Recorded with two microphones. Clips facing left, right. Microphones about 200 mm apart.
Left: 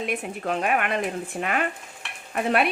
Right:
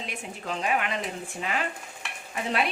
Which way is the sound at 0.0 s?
60° left (ahead or behind).